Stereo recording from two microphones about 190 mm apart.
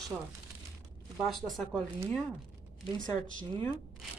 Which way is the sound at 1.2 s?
Centre (ahead or behind).